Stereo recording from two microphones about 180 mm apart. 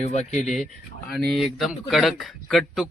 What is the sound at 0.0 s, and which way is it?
Speech, 35° left (ahead or behind).